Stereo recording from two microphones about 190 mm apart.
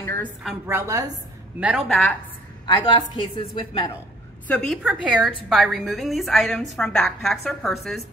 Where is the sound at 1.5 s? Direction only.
5° right (ahead or behind).